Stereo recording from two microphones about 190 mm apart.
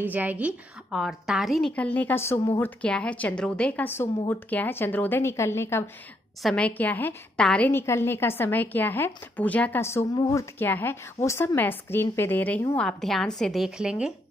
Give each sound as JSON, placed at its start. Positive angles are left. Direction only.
{"t": 0.0, "sound": "a woman's voice", "side_deg": -10}